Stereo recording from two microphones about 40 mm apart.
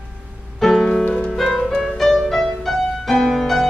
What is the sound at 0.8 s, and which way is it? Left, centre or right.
Music, centre.